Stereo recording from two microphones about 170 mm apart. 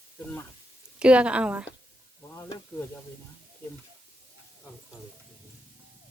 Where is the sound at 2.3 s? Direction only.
15° left (ahead or behind).